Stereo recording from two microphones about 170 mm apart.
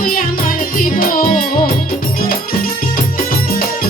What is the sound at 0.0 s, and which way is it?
Music, 55° left (ahead or behind).